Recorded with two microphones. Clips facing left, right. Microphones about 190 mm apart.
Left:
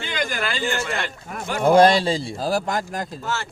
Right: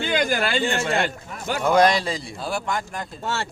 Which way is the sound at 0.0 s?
35° right (ahead or behind).